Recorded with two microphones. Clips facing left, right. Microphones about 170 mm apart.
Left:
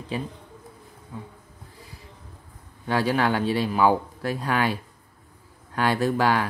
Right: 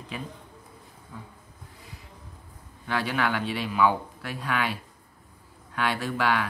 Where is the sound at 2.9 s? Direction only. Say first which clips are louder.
Left 5 dB; 35° left (ahead or behind).